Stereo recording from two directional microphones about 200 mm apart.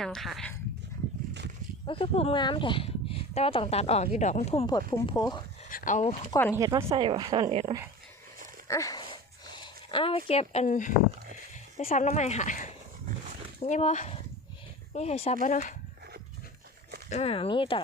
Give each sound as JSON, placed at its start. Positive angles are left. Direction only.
{"t": 0.0, "sound": "speech", "side_deg": 0}
{"t": 1.9, "sound": "speech", "side_deg": 30}
{"t": 5.6, "sound": "speech", "side_deg": 40}
{"t": 6.5, "sound": "speech", "side_deg": -15}
{"t": 8.6, "sound": "a sound", "side_deg": 15}
{"t": 11.8, "sound": "speech", "side_deg": 40}
{"t": 17.1, "sound": "speech", "side_deg": 30}